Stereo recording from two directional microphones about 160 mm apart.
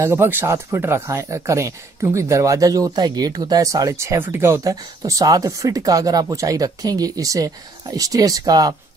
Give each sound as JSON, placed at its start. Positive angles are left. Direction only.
{"t": 0.0, "sound": "speech", "side_deg": -15}